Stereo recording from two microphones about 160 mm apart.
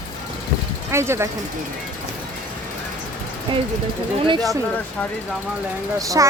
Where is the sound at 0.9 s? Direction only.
15° right (ahead or behind).